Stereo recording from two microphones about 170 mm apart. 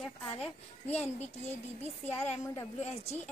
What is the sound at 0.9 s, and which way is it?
Speech, 40° left (ahead or behind).